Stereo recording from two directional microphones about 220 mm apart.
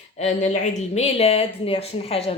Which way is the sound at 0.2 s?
30° left (ahead or behind).